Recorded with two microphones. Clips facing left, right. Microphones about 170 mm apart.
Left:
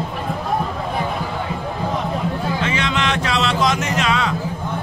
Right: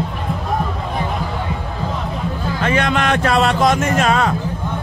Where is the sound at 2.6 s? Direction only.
55° right (ahead or behind).